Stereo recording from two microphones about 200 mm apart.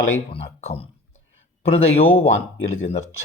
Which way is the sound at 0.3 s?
30° left (ahead or behind).